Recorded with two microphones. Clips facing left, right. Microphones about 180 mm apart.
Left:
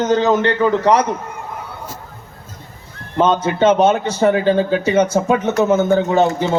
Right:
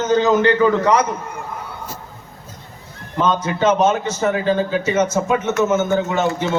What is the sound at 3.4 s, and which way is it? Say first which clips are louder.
Speech: left 2 dB; 30° left (ahead or behind).